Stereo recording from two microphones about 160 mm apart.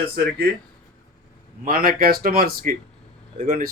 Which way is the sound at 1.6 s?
65° right (ahead or behind).